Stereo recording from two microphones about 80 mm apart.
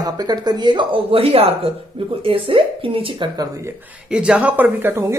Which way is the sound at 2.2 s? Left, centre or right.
Right.